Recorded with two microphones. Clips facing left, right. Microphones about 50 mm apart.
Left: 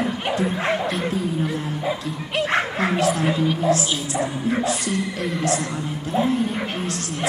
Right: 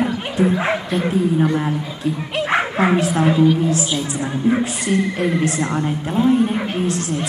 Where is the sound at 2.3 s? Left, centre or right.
Centre.